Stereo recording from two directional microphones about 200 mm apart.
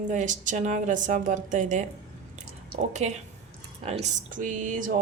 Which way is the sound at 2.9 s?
35° right (ahead or behind).